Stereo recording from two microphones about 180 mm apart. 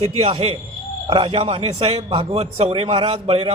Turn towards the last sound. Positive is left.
turn(degrees=-35)  # may be behind; listen again after turning